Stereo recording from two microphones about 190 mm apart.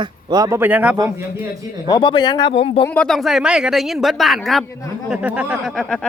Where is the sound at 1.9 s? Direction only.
25° left (ahead or behind).